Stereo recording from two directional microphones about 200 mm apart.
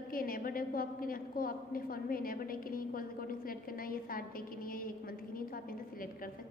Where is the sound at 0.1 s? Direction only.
45° left (ahead or behind).